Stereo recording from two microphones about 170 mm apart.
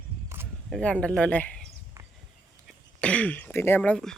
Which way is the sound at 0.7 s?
5° left (ahead or behind).